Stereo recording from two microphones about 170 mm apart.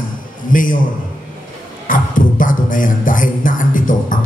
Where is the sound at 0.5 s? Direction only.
50° left (ahead or behind).